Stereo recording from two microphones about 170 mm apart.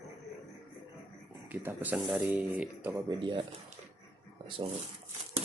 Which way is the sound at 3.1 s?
30° right (ahead or behind).